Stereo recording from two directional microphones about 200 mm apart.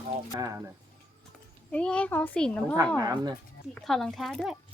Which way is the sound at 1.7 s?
5° left (ahead or behind).